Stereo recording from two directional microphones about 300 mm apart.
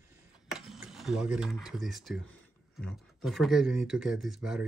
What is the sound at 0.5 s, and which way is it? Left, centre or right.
Speech, centre.